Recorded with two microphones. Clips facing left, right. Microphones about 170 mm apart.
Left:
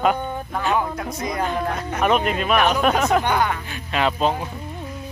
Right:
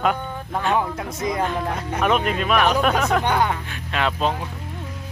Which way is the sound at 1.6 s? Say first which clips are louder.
Left 1 dB; 15° right (ahead or behind).